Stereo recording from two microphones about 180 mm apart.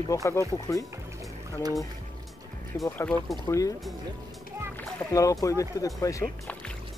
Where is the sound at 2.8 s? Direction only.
10° left (ahead or behind).